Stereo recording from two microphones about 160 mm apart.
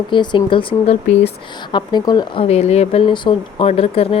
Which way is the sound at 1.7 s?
25° left (ahead or behind).